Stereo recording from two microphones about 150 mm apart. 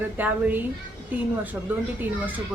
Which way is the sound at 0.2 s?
10° right (ahead or behind).